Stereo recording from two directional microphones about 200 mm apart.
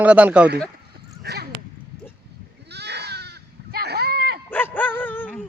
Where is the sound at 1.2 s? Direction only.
55° right (ahead or behind).